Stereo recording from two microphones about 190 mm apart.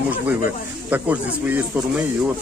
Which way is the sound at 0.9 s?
10° right (ahead or behind).